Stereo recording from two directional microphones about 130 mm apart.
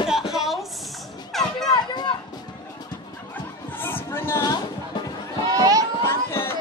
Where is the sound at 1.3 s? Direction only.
Centre (ahead or behind).